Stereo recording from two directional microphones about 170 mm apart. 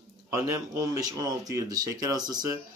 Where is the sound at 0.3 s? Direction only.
15° right (ahead or behind).